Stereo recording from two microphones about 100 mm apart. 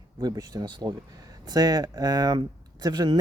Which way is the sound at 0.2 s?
40° right (ahead or behind).